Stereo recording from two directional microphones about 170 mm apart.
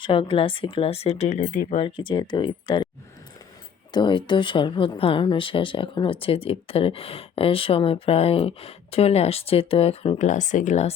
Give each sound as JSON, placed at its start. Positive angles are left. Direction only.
{"t": 0.0, "sound": "speech", "side_deg": 30}
{"t": 1.8, "sound": "speech", "side_deg": 30}
{"t": 3.9, "sound": "speech", "side_deg": 30}